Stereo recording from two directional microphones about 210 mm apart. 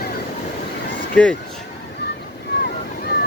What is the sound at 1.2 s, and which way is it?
Speech, 5° left (ahead or behind).